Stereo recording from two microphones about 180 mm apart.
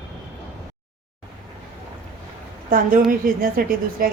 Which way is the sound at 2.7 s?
50° right (ahead or behind).